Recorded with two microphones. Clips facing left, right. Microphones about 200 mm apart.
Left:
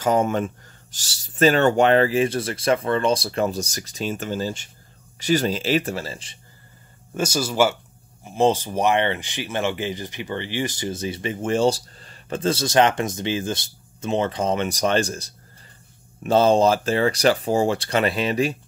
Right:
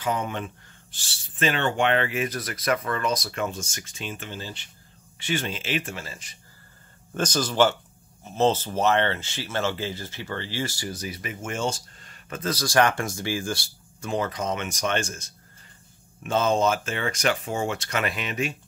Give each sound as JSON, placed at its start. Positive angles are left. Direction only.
{"t": 0.0, "sound": "speech", "side_deg": 45}
{"t": 7.2, "sound": "speech", "side_deg": 10}